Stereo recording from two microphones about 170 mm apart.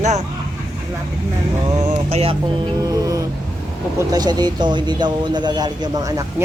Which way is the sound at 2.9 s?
20° right (ahead or behind).